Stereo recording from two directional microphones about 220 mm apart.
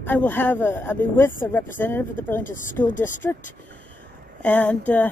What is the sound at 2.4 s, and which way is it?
Speech, 35° left (ahead or behind).